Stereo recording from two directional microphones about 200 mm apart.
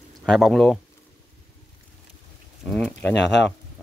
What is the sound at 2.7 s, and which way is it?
Pigeon, 10° left (ahead or behind).